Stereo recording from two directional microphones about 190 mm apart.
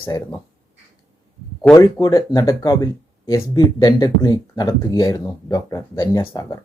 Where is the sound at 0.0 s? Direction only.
10° left (ahead or behind).